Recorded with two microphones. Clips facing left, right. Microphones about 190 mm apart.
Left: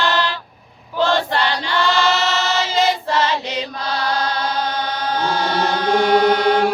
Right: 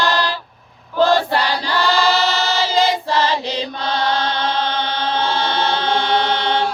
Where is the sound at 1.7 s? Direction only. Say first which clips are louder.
Right 1 dB; 35° right (ahead or behind).